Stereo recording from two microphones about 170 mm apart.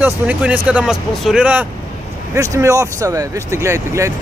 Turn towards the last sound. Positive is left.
turn(degrees=-15)  # may be behind; listen again after turning